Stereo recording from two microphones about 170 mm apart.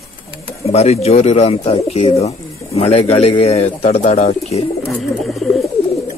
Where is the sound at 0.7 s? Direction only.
40° left (ahead or behind).